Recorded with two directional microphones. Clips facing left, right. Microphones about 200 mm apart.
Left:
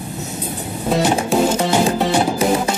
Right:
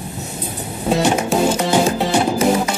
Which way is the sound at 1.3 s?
Centre (ahead or behind).